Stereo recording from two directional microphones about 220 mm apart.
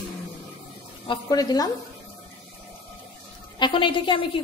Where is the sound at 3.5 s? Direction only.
20° left (ahead or behind).